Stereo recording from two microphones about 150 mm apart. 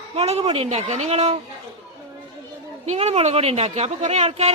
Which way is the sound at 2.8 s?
45° right (ahead or behind).